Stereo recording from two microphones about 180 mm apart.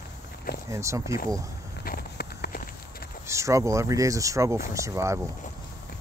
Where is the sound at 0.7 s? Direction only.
15° right (ahead or behind).